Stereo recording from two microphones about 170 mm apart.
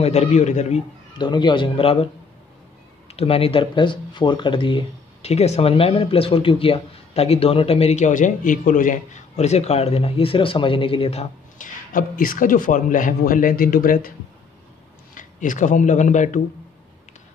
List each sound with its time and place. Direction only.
0.0 s speech: 40° left (ahead or behind)
1.1 s a man's voice: 25° left (ahead or behind)
3.2 s speech: 35° left (ahead or behind); by 14.1 s 55° left (ahead or behind)
15.1 s speech: 50° left (ahead or behind)